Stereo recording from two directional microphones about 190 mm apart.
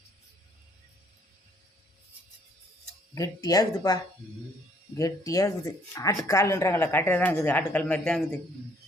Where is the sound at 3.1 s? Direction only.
20° left (ahead or behind).